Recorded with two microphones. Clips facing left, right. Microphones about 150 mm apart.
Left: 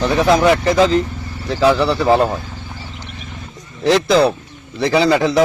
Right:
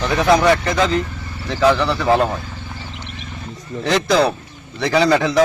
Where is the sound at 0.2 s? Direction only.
5° left (ahead or behind).